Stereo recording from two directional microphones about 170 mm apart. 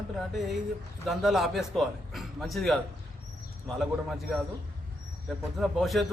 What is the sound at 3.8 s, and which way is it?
Speech, centre (ahead or behind).